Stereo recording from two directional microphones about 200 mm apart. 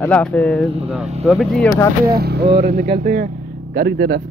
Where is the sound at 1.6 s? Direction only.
15° left (ahead or behind).